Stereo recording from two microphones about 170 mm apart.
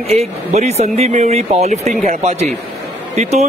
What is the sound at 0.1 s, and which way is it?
Speech, 40° right (ahead or behind).